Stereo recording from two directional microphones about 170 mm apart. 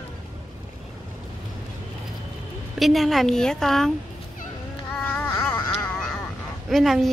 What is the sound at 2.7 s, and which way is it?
A woman's voice, centre (ahead or behind).